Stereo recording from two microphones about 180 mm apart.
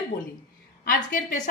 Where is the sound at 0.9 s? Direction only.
45° left (ahead or behind).